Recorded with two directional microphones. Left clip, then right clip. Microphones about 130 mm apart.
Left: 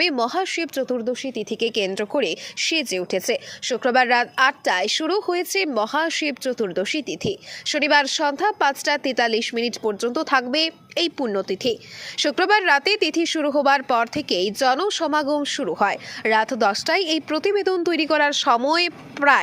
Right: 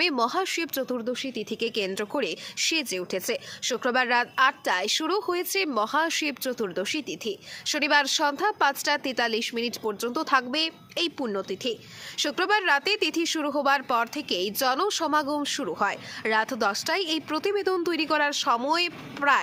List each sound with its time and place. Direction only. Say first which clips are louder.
0.0 s a woman's voice: left 4 dB; 15° left (ahead or behind)